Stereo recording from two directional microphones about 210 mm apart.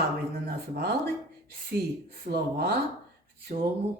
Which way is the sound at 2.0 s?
45° right (ahead or behind).